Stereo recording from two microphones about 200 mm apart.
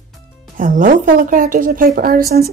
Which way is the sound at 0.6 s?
40° right (ahead or behind).